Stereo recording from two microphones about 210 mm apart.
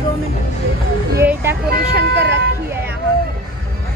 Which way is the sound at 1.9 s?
55° right (ahead or behind).